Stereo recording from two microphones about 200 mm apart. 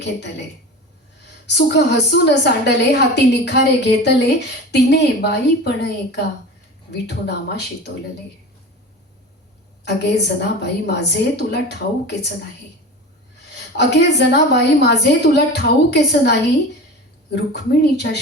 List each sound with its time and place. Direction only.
1.5 s a woman's voice: 60° left (ahead or behind)
9.8 s a woman's voice: 55° left (ahead or behind)
13.5 s a woman's voice: 60° left (ahead or behind)